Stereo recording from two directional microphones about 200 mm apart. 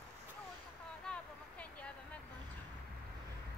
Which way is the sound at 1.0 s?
5° left (ahead or behind).